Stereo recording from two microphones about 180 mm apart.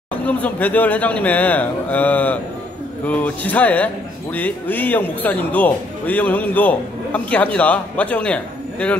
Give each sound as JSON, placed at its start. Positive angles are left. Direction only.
{"t": 0.2, "sound": "a man's voice", "side_deg": 10}